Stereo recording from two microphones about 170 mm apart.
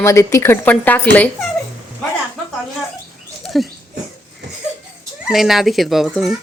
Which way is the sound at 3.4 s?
Centre (ahead or behind).